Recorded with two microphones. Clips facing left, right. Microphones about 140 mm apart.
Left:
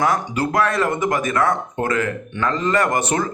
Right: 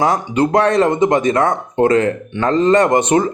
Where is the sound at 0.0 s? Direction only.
25° right (ahead or behind).